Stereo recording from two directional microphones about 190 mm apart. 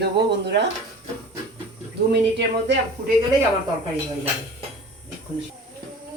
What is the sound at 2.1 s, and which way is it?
Speech, 65° right (ahead or behind).